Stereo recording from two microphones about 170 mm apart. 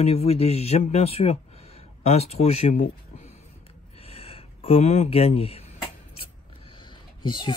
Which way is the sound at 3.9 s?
35° left (ahead or behind).